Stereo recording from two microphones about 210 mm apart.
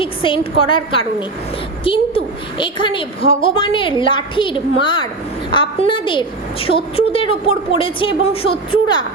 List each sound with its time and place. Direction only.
0.0 s a woman's voice: 25° left (ahead or behind)